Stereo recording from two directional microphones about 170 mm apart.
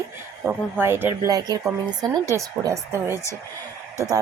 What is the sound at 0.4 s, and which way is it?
Speech, 10° right (ahead or behind).